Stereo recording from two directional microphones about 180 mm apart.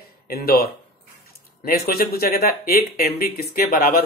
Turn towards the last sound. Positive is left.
turn(degrees=55)  # may be behind; listen again after turning